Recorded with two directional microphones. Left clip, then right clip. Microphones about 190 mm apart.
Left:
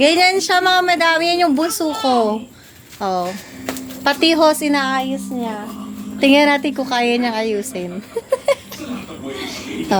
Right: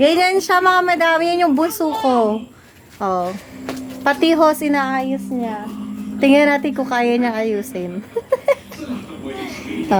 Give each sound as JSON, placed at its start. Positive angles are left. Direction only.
{"t": 0.0, "sound": "a woman's voice", "side_deg": -20}